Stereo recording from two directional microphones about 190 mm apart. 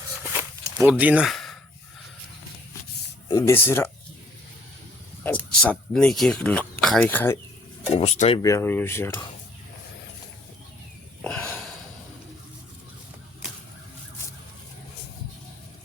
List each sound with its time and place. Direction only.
0.8 s speech: 10° right (ahead or behind)
3.2 s speech: 20° left (ahead or behind)
5.2 s speech: 10° left (ahead or behind)
7.9 s speech: 30° left (ahead or behind)
8.4 s speech: 15° left (ahead or behind)
11.2 s a sound: 5° left (ahead or behind)